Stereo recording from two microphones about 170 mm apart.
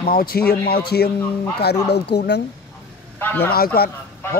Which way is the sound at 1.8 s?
80° left.